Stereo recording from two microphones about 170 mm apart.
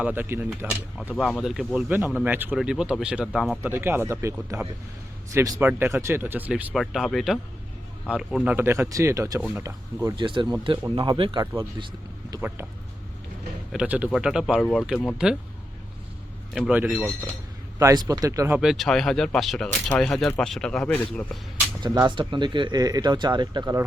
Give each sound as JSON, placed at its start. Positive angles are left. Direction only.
{"t": 0.0, "sound": "speech", "side_deg": -10}
{"t": 1.1, "sound": "speech", "side_deg": 5}
{"t": 10.2, "sound": "speech", "side_deg": -30}
{"t": 12.4, "sound": "speech", "side_deg": -10}
{"t": 13.7, "sound": "speech", "side_deg": -10}
{"t": 16.6, "sound": "speech", "side_deg": -5}
{"t": 17.7, "sound": "speech", "side_deg": -20}
{"t": 18.6, "sound": "speech", "side_deg": 0}
{"t": 21.8, "sound": "speech", "side_deg": -20}